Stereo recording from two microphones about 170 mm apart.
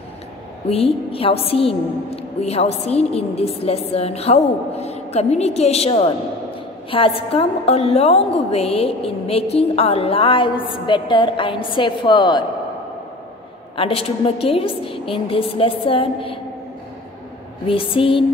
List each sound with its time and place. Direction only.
0.7 s a woman's voice: 35° left (ahead or behind)
13.7 s a woman's voice: 35° left (ahead or behind)
17.6 s a woman's voice: 30° left (ahead or behind)